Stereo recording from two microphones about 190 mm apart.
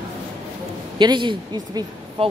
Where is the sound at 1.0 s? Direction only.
25° right (ahead or behind).